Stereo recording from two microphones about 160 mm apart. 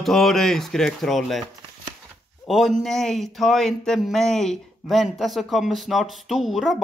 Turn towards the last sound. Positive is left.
turn(degrees=0)  # may be behind; listen again after turning